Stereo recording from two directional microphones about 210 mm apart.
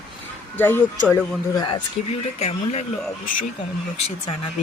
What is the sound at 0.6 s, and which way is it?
Speech, 10° left (ahead or behind).